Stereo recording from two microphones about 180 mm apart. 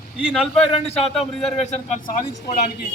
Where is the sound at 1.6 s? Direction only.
35° left (ahead or behind).